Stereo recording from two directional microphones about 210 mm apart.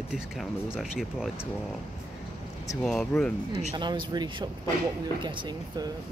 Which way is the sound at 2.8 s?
Centre (ahead or behind).